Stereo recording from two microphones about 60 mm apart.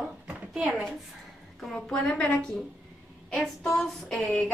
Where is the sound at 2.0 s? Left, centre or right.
Centre.